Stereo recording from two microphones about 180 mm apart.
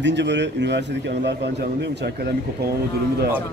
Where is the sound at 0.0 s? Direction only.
75° right (ahead or behind).